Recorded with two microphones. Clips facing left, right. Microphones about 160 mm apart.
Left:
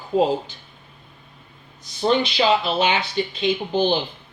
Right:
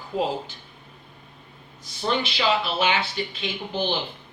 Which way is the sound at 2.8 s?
20° left (ahead or behind).